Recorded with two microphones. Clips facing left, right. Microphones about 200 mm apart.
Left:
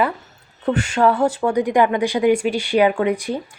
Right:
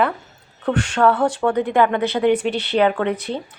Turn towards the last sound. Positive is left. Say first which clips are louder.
# left 2 dB
turn(degrees=10)  # may be behind; listen again after turning